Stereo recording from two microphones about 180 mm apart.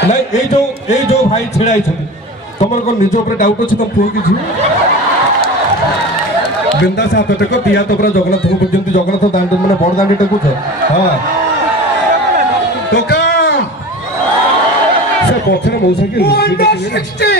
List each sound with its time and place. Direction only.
0.8 s a man's voice: 40° left (ahead or behind)
7.0 s a man's voice: 75° left (ahead or behind)
12.9 s music: 70° left (ahead or behind)
15.9 s speech: 65° left (ahead or behind)